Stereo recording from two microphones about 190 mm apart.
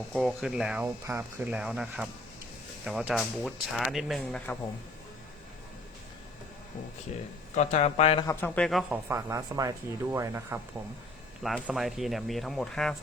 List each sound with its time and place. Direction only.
0.1 s speech: centre (ahead or behind)
7.5 s speech: 35° left (ahead or behind)
8.3 s a man's voice: 10° left (ahead or behind)
8.9 s speech: 15° right (ahead or behind)
11.4 s speech: centre (ahead or behind)